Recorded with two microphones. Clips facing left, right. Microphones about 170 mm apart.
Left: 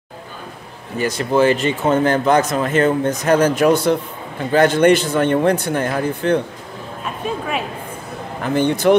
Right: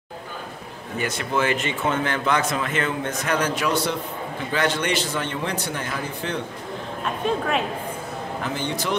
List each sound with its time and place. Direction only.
0.9 s a man's voice: 35° left (ahead or behind); by 6.4 s 55° left (ahead or behind)
7.2 s speech: 5° left (ahead or behind)
8.5 s speech: 55° left (ahead or behind)